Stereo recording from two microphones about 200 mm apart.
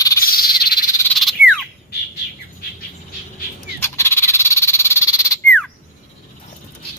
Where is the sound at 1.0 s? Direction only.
Centre (ahead or behind).